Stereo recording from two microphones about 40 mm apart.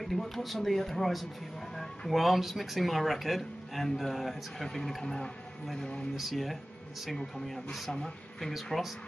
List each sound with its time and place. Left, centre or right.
0.0 s speech: centre
5.0 s speech: centre
6.1 s speech: centre